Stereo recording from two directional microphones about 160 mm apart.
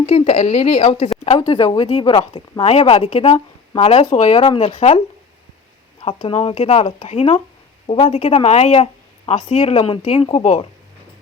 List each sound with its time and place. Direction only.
0.0 s speech: 40° left (ahead or behind)
4.4 s speech: 35° left (ahead or behind)